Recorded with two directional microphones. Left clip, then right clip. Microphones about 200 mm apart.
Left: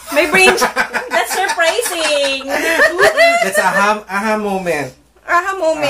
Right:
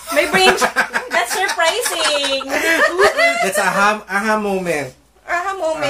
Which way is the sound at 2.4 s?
20° right (ahead or behind).